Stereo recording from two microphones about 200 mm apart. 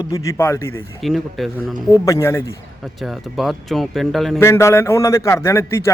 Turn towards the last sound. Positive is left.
turn(degrees=15)  # may be behind; listen again after turning